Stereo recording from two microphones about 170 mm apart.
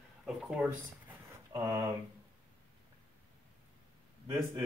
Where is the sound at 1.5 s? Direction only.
20° right (ahead or behind).